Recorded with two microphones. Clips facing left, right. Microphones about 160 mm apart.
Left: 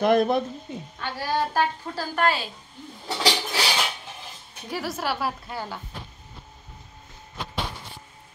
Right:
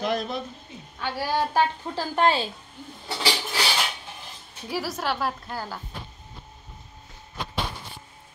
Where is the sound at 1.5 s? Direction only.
20° right (ahead or behind).